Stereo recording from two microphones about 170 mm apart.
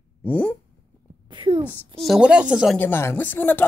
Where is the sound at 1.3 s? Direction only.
30° right (ahead or behind).